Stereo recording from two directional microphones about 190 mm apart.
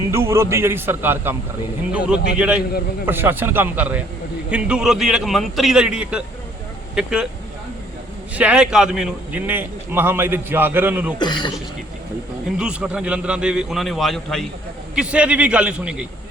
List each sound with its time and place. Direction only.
0.1 s a man's voice: 15° right (ahead or behind)
8.4 s a man's voice: 5° right (ahead or behind)
11.2 s speech: 25° left (ahead or behind)
12.5 s a man's voice: 5° right (ahead or behind)